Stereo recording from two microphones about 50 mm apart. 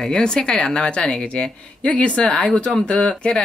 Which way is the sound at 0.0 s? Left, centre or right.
Centre.